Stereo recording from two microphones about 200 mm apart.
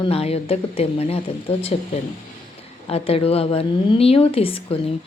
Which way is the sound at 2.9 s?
30° left (ahead or behind).